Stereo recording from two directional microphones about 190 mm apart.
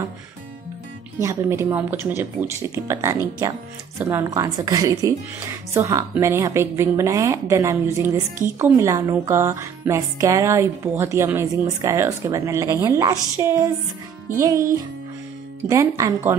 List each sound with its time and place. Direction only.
1.2 s a woman's voice: 15° right (ahead or behind)
15.7 s a woman's voice: 15° right (ahead or behind)